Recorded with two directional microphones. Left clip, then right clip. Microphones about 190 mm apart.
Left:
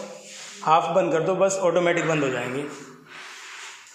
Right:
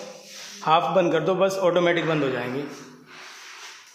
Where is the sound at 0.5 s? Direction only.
30° right (ahead or behind).